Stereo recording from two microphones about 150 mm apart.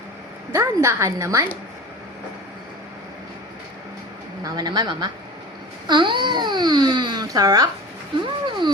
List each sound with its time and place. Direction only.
0.5 s speech: 20° right (ahead or behind)
4.4 s speech: 25° right (ahead or behind)
8.2 s a sound: 30° right (ahead or behind)